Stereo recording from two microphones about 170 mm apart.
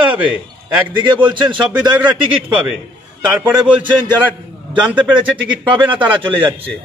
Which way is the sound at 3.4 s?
5° right (ahead or behind).